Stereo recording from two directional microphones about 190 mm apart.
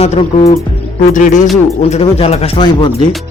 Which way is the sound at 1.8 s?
30° left (ahead or behind).